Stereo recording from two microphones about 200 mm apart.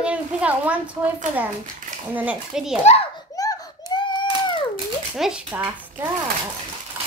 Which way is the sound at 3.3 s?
15° left (ahead or behind).